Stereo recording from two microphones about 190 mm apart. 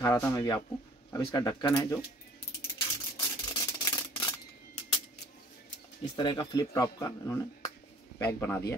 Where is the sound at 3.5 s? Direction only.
15° left (ahead or behind).